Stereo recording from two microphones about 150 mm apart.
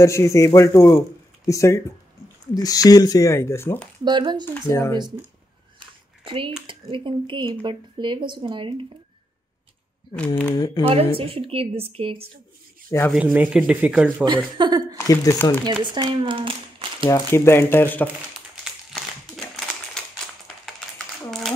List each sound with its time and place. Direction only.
0.0 s speech: 20° left (ahead or behind)
4.0 s speech: 30° right (ahead or behind)
4.6 s speech: 20° left (ahead or behind)
6.2 s speech: 35° right (ahead or behind)
10.1 s speech: 10° left (ahead or behind)
10.5 s speech: 25° left (ahead or behind)
10.8 s speech: 40° right (ahead or behind)
13.1 s speech: 10° right (ahead or behind)
14.2 s speech: 30° right (ahead or behind)
15.0 s speech: 20° left (ahead or behind)
15.8 s speech: 30° right (ahead or behind)
17.1 s speech: 15° left (ahead or behind)
19.3 s a sound: 5° left (ahead or behind)